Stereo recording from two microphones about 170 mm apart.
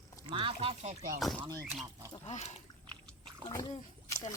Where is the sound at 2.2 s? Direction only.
40° left (ahead or behind).